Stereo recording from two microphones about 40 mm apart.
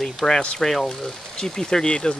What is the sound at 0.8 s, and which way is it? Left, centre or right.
Speech, centre.